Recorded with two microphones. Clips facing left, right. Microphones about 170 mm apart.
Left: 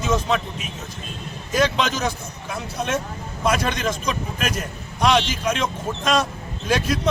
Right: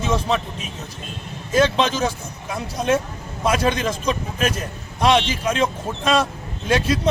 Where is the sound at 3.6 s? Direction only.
30° right (ahead or behind).